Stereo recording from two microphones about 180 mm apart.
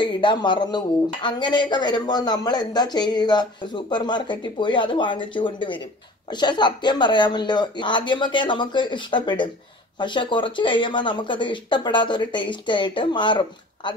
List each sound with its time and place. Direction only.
0.0 s speech: 25° left (ahead or behind)